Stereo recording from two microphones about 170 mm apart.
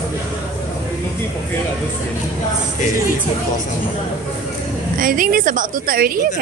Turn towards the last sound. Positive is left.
turn(degrees=-60)  # may be behind; listen again after turning